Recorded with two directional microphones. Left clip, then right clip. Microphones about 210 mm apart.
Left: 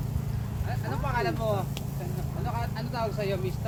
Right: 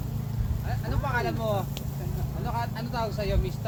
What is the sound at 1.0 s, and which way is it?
Vehicle, 50° right (ahead or behind).